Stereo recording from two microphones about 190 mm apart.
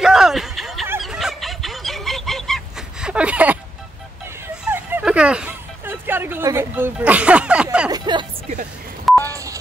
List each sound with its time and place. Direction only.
0.0 s a sound: 5° right (ahead or behind)
1.0 s fowl: centre (ahead or behind)
4.6 s a sound: 10° right (ahead or behind)
7.9 s vehicle: 25° right (ahead or behind)
9.0 s telephone dialing: 10° left (ahead or behind)
9.3 s telephone dialing: 15° right (ahead or behind)